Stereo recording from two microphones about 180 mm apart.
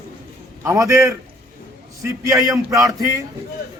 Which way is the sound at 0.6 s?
15° right (ahead or behind).